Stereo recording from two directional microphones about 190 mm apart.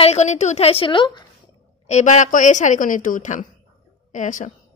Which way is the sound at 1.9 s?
40° left (ahead or behind).